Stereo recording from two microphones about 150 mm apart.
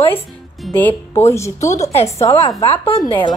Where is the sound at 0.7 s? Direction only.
15° left (ahead or behind).